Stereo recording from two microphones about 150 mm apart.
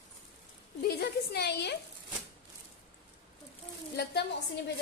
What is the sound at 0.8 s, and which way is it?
Speech, 90° left.